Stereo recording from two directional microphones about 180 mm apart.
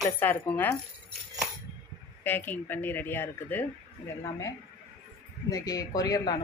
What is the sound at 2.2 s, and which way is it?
Speech, 10° left (ahead or behind).